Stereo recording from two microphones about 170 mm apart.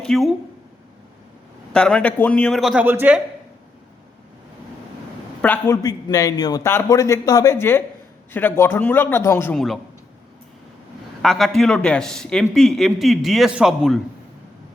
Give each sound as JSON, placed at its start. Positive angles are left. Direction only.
{"t": 0.0, "sound": "speech", "side_deg": 0}
{"t": 1.7, "sound": "a man's voice", "side_deg": 5}
{"t": 2.8, "sound": "a woman's voice", "side_deg": -10}
{"t": 5.4, "sound": "a man's voice", "side_deg": 10}
{"t": 9.6, "sound": "a man's voice", "side_deg": 0}
{"t": 11.2, "sound": "a man's voice", "side_deg": 0}